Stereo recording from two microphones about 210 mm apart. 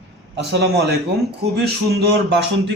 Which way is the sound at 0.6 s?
50° right (ahead or behind).